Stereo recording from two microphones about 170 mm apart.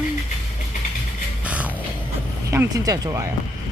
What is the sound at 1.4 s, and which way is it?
Music, 10° right (ahead or behind).